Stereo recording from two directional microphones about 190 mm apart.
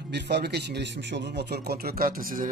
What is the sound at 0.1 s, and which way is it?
Speech, 60° right (ahead or behind).